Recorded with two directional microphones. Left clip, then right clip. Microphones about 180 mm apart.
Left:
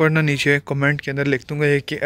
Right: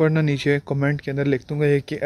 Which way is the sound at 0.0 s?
Centre (ahead or behind).